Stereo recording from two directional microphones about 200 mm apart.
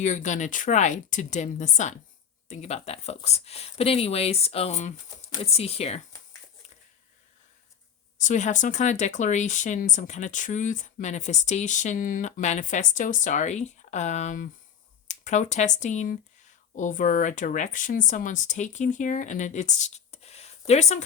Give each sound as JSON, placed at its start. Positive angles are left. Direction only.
{"t": 0.0, "sound": "speech", "side_deg": 35}
{"t": 8.2, "sound": "speech", "side_deg": 35}